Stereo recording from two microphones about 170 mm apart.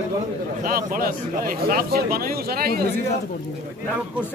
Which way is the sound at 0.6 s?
55° right (ahead or behind).